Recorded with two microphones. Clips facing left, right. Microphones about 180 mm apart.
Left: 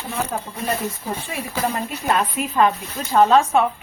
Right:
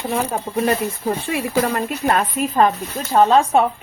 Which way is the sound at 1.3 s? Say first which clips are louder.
Right 4 dB; 65° right (ahead or behind).